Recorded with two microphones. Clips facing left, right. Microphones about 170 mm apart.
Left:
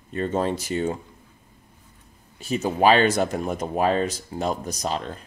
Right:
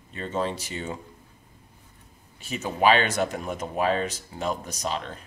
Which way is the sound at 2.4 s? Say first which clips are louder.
Left 3 dB; 40° left (ahead or behind).